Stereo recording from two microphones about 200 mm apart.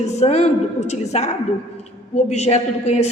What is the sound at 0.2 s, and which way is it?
A woman's voice, 30° left (ahead or behind).